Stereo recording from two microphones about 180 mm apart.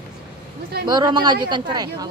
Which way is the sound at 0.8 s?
25° right (ahead or behind).